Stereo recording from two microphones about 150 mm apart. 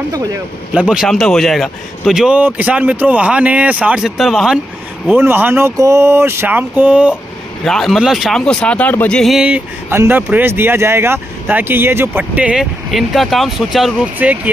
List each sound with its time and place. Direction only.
0.1 s speech: 25° right (ahead or behind)
0.7 s speech: 5° right (ahead or behind)
5.0 s speech: 15° right (ahead or behind)
7.6 s speech: 5° left (ahead or behind)
9.2 s speech: 5° right (ahead or behind)